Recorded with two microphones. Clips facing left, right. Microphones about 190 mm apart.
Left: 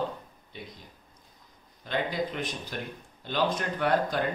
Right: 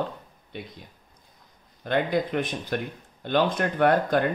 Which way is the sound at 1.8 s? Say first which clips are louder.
Right 6 dB; 55° right (ahead or behind).